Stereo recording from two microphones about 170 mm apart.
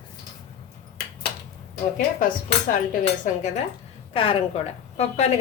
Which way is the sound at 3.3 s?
50° left (ahead or behind).